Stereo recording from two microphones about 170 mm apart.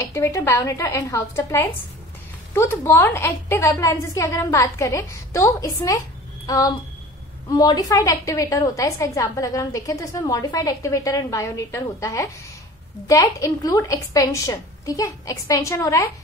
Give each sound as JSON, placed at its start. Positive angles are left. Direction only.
{"t": 0.0, "sound": "a woman's voice", "side_deg": 15}